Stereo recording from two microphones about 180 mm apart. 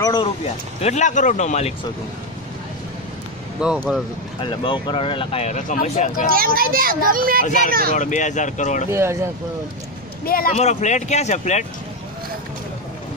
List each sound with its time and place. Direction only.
0.0 s speech: 25° left (ahead or behind)
0.7 s speech: 40° left (ahead or behind)
3.6 s speech: 5° right (ahead or behind)
4.4 s speech: 25° left (ahead or behind); by 6.3 s 45° left (ahead or behind)
6.3 s a child's voice: 55° right (ahead or behind)
7.4 s speech: 45° left (ahead or behind)
8.9 s speech: 15° right (ahead or behind)
10.2 s speech: 55° left (ahead or behind)
10.5 s speech: 40° left (ahead or behind)